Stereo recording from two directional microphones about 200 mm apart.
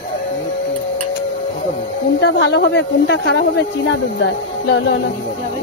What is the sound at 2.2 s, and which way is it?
Speech, 65° left (ahead or behind).